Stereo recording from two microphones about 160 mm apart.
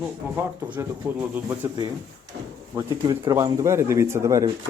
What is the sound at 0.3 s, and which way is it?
Speech, 15° right (ahead or behind).